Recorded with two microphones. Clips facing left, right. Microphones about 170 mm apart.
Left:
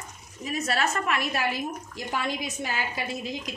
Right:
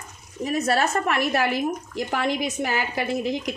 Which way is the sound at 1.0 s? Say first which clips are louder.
Right 5 dB; 55° right (ahead or behind).